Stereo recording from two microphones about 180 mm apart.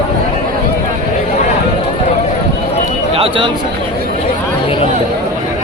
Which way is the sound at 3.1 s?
30° right (ahead or behind).